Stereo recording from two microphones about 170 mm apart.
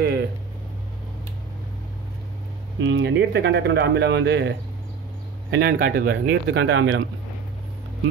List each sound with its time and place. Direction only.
0.0 s a sound: 80° right
2.8 s speech: 90° right
5.5 s speech: 60° right (ahead or behind); by 7.0 s 90° right